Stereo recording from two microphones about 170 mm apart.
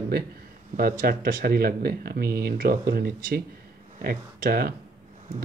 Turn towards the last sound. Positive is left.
turn(degrees=-65)  # may be behind; listen again after turning